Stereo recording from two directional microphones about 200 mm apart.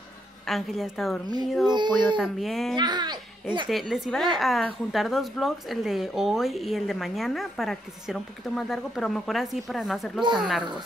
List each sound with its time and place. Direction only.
0.5 s a woman's voice: centre (ahead or behind)
1.7 s speech: 20° right (ahead or behind)
2.1 s a woman's voice: centre (ahead or behind)
2.7 s speech: 20° right (ahead or behind)
3.6 s a woman's voice: centre (ahead or behind)